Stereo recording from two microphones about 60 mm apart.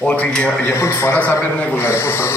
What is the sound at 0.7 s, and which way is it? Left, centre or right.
A man's voice, left.